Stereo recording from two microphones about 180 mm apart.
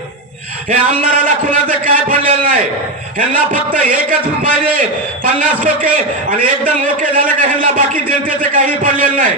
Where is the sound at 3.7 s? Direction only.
50° right (ahead or behind).